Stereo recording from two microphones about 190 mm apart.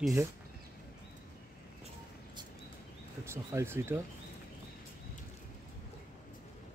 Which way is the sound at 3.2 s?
15° right (ahead or behind).